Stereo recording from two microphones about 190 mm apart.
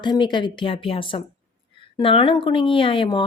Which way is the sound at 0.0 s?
25° left (ahead or behind).